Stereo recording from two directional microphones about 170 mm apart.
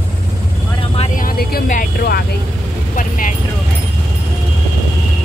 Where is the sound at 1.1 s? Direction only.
60° left (ahead or behind).